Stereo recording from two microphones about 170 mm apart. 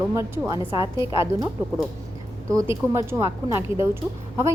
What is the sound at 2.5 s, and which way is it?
Speech, 15° right (ahead or behind).